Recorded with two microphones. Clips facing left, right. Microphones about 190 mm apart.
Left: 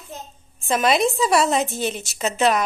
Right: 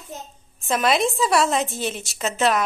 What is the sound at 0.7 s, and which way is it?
Speech, centre (ahead or behind).